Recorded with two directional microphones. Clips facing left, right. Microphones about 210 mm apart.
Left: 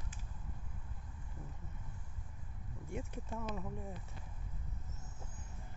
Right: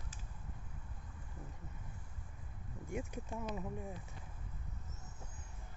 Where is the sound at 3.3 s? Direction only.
10° right (ahead or behind).